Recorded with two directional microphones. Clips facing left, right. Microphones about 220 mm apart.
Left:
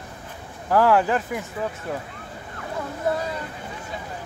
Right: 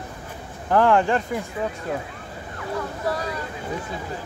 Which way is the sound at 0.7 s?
5° left (ahead or behind).